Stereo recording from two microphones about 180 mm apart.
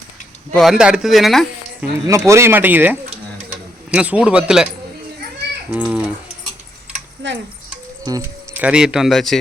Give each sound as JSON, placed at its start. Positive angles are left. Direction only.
{"t": 0.5, "sound": "speech", "side_deg": 0}
{"t": 2.0, "sound": "speech", "side_deg": -15}
{"t": 5.7, "sound": "speech", "side_deg": -5}
{"t": 7.2, "sound": "a sound", "side_deg": -85}
{"t": 8.0, "sound": "speech", "side_deg": -15}